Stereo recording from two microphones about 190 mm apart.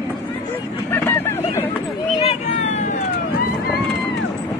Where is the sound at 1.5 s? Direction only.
10° left (ahead or behind).